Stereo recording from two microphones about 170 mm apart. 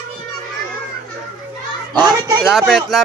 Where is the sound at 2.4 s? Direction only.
Centre (ahead or behind).